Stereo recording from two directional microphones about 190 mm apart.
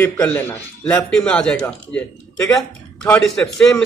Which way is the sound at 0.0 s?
10° left (ahead or behind).